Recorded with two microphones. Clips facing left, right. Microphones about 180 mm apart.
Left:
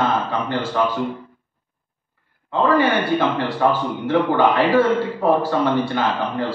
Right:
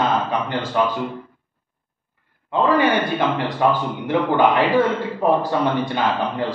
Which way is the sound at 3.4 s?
15° right (ahead or behind).